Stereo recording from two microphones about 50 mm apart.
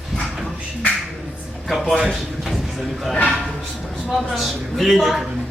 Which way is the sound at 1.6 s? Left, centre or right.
Centre.